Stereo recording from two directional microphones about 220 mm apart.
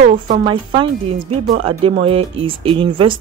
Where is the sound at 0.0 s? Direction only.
30° right (ahead or behind).